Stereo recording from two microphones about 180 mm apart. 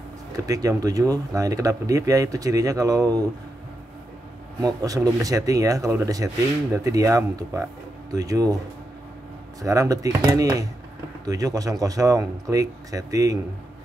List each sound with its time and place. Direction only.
0.5 s speech: 20° right (ahead or behind)
4.6 s speech: 20° right (ahead or behind)
9.6 s speech: 20° right (ahead or behind)